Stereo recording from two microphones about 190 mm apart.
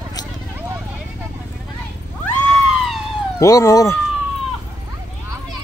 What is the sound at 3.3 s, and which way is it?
Speech, 15° left (ahead or behind).